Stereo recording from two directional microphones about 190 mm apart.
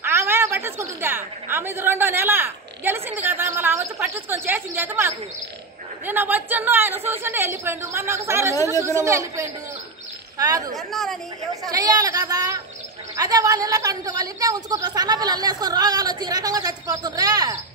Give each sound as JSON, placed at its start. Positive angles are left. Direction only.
{"t": 0.0, "sound": "a woman's voice", "side_deg": -15}
{"t": 10.8, "sound": "speech", "side_deg": 0}
{"t": 11.7, "sound": "a woman's voice", "side_deg": -20}